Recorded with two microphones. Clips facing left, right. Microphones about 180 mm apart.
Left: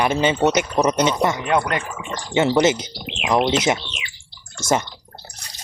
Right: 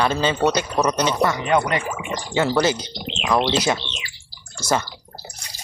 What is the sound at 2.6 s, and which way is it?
Speech, 20° left (ahead or behind).